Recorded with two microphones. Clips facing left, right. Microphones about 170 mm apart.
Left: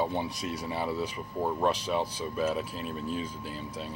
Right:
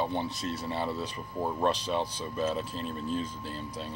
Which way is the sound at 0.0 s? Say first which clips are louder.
Left 1 dB; 10° left (ahead or behind).